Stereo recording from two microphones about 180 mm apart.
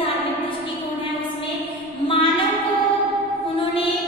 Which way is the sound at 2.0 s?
30° left (ahead or behind).